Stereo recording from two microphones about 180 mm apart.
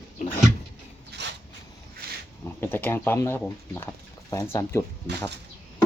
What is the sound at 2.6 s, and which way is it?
Speech, 10° left (ahead or behind).